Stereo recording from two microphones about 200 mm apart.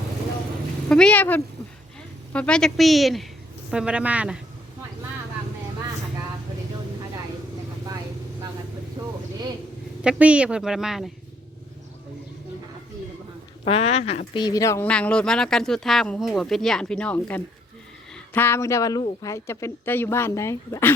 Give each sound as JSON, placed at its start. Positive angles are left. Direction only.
{"t": 0.9, "sound": "speech", "side_deg": 5}
{"t": 10.0, "sound": "speech", "side_deg": -5}
{"t": 13.7, "sound": "speech", "side_deg": 30}